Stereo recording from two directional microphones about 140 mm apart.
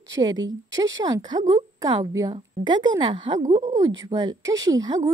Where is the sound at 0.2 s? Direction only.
30° right (ahead or behind).